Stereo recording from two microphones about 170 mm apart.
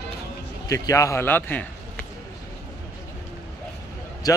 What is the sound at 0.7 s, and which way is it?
A man's voice, 20° left (ahead or behind).